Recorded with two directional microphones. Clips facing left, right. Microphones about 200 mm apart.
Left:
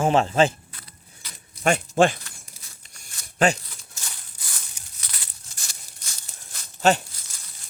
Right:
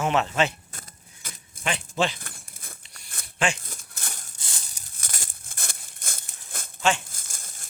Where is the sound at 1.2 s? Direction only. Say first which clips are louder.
Right 4 dB; 50° right (ahead or behind).